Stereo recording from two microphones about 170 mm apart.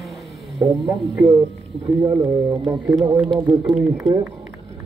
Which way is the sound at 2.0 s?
20° right (ahead or behind).